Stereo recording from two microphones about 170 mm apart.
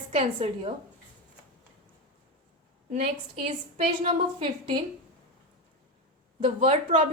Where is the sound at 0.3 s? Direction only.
35° right (ahead or behind).